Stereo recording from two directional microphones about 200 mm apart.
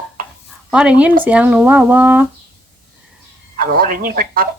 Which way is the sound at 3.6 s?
45° right (ahead or behind).